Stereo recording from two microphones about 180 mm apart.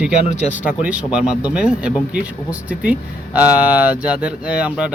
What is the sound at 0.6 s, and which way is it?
Speech, 5° right (ahead or behind).